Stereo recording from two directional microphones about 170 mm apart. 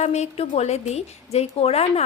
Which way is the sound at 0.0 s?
40° left (ahead or behind).